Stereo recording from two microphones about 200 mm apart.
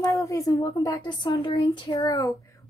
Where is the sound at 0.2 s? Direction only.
15° left (ahead or behind).